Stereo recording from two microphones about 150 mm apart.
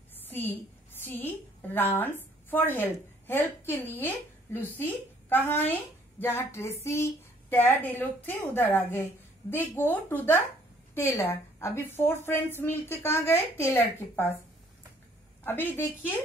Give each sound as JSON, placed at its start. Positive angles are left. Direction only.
{"t": 0.1, "sound": "a sound", "side_deg": 15}
{"t": 0.9, "sound": "a woman's voice", "side_deg": 15}
{"t": 15.4, "sound": "speech", "side_deg": 15}